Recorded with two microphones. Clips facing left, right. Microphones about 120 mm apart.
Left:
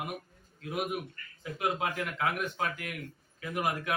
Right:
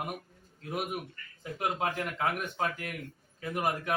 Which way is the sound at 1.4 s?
40° right (ahead or behind).